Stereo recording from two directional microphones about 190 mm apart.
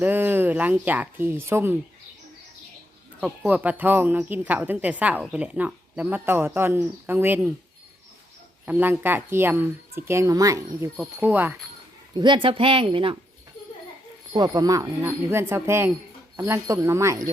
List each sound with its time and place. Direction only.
0.0 s speech: 10° right (ahead or behind)
3.2 s speech: 10° right (ahead or behind)
8.6 s speech: 10° right (ahead or behind)
12.1 s speech: 25° right (ahead or behind)
14.3 s speech: 20° right (ahead or behind)